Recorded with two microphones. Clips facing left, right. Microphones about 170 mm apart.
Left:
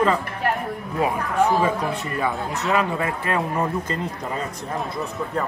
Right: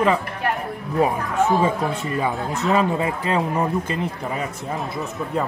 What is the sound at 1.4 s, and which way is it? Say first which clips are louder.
Speech: right 1 dB; 25° right (ahead or behind).